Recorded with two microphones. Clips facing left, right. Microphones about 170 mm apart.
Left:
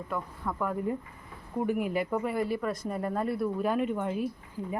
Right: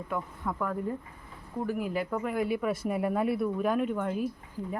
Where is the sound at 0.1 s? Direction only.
Centre (ahead or behind).